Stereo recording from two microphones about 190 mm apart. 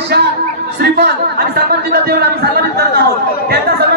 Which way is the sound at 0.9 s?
60° right (ahead or behind).